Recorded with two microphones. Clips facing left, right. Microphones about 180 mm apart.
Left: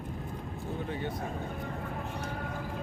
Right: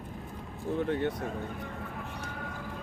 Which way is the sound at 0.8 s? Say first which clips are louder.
Right 7 dB; 70° right (ahead or behind).